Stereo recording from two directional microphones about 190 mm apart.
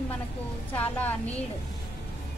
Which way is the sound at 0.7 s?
10° left (ahead or behind).